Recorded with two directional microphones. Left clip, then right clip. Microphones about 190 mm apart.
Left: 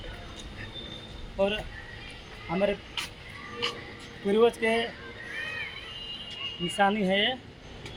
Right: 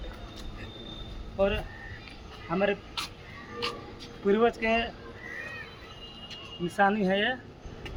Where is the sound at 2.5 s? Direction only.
35° left (ahead or behind).